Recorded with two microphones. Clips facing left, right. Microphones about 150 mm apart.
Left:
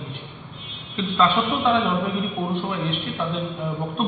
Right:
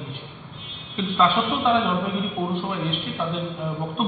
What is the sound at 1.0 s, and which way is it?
Speech, 15° right (ahead or behind).